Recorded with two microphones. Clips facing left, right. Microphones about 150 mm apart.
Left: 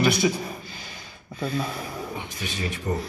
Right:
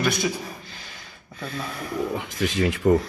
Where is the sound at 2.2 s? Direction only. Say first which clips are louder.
Right 8 dB; 90° right.